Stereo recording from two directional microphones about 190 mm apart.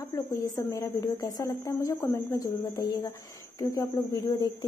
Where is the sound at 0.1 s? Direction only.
15° left (ahead or behind).